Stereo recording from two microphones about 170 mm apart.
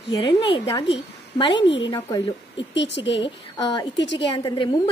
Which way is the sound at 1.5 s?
90° left.